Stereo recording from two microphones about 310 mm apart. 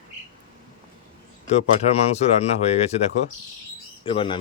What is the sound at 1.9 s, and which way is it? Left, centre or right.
Speech, centre.